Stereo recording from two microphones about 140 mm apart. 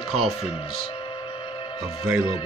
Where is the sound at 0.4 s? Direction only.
40° left (ahead or behind).